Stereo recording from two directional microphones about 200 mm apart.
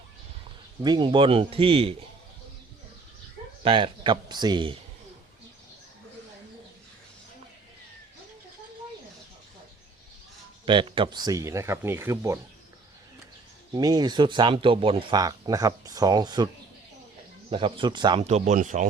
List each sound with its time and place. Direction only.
0.8 s speech: 20° right (ahead or behind)
3.6 s speech: 25° right (ahead or behind)
10.7 s speech: 25° right (ahead or behind)
13.7 s speech: 20° right (ahead or behind)
17.5 s speech: 25° right (ahead or behind)
18.3 s speech: 35° right (ahead or behind)